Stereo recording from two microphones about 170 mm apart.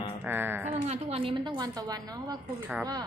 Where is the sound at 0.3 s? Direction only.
10° right (ahead or behind).